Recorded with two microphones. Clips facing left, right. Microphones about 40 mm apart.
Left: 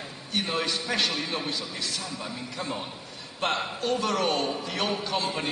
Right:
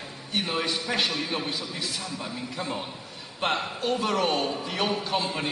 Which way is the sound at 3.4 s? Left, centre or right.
Centre.